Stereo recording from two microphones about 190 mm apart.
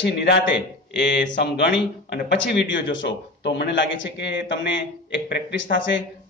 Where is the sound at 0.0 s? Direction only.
60° left (ahead or behind).